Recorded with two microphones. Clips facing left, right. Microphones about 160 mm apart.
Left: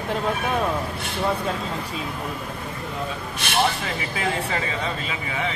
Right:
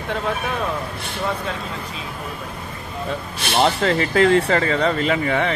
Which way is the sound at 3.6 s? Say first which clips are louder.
Right 6 dB; 70° right (ahead or behind).